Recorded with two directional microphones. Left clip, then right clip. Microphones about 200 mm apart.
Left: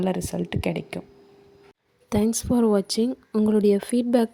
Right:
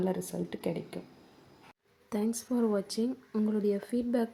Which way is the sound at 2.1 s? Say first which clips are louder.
Left 10 dB; 45° left (ahead or behind).